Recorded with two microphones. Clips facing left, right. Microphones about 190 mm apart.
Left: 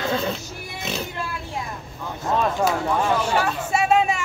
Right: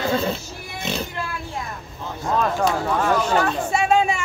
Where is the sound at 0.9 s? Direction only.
Centre (ahead or behind).